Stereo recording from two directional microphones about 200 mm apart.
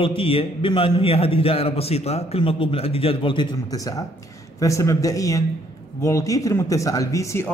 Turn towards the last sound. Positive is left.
turn(degrees=15)  # may be behind; listen again after turning